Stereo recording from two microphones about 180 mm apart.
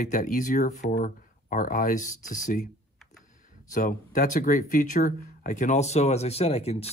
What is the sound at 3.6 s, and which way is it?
Speech, 45° left (ahead or behind).